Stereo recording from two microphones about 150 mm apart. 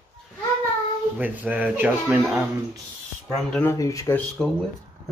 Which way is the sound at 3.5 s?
15° left (ahead or behind).